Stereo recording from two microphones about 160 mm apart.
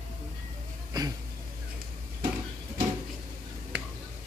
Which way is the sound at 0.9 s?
25° right (ahead or behind).